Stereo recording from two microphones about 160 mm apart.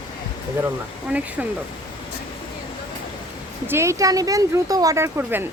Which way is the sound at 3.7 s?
15° right (ahead or behind).